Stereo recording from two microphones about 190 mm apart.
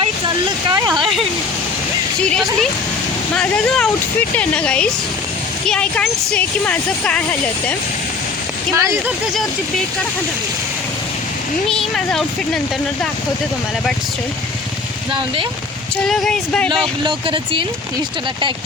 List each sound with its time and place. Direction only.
0.0 s vehicle: 25° right (ahead or behind)
2.2 s speech: 5° left (ahead or behind)
4.4 s speech: 5° left (ahead or behind)
8.7 s speech: 15° right (ahead or behind)
11.7 s speech: centre (ahead or behind)
16.0 s speech: centre (ahead or behind)
17.0 s speech: 25° right (ahead or behind)